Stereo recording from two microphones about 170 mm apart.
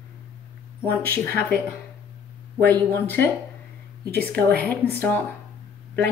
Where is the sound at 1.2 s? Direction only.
10° left (ahead or behind).